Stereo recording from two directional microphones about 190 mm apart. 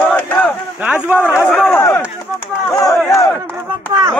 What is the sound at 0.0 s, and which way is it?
Crowd, 10° left (ahead or behind).